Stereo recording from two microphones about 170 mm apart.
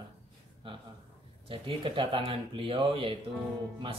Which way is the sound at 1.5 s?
30° right (ahead or behind).